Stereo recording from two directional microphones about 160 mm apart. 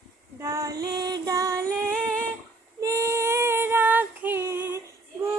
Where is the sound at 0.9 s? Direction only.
25° right (ahead or behind).